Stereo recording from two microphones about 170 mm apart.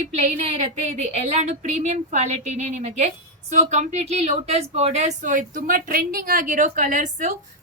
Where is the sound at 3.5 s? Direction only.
40° right (ahead or behind).